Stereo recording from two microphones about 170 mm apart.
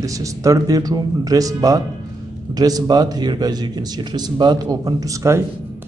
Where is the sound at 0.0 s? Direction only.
20° right (ahead or behind).